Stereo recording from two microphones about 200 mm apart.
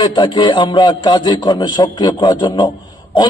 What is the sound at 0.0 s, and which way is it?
A man's voice, 25° left (ahead or behind).